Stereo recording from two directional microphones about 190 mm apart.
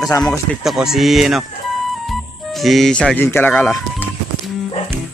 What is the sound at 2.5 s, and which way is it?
Speech, centre (ahead or behind).